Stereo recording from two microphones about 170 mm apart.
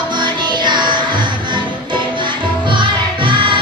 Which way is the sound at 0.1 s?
25° right (ahead or behind).